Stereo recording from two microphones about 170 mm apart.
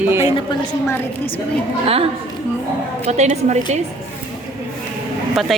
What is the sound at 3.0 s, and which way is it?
Speech, 40° right (ahead or behind).